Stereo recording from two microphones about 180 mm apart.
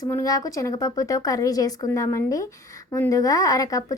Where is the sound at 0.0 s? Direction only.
20° left (ahead or behind).